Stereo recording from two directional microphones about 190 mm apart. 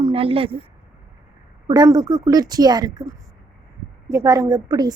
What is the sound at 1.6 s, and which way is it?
Speech, 20° right (ahead or behind).